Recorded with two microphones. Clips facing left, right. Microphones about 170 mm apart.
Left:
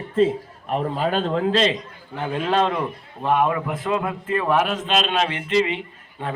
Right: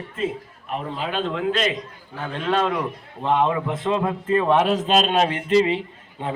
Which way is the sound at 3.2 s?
20° right (ahead or behind).